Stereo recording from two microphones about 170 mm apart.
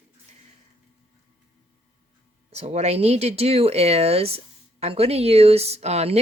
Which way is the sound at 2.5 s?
40° right (ahead or behind).